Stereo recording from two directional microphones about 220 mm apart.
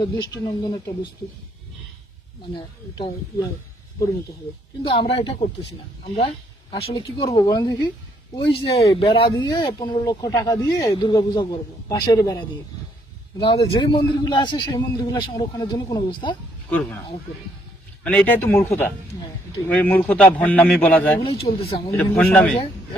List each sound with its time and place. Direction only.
0.0 s speech: 20° left (ahead or behind)
4.8 s speech: 25° left (ahead or behind)
16.6 s a man's voice: 10° left (ahead or behind)
18.0 s a man's voice: 5° left (ahead or behind)
21.2 s speech: 25° left (ahead or behind)
22.1 s a man's voice: 5° left (ahead or behind)